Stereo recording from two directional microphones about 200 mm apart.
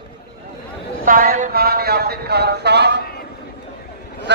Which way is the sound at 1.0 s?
45° right (ahead or behind).